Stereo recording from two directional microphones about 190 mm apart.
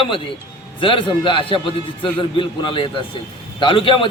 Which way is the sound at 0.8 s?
25° left (ahead or behind).